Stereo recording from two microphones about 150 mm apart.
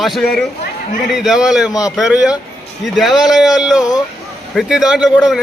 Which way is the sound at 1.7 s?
25° left (ahead or behind).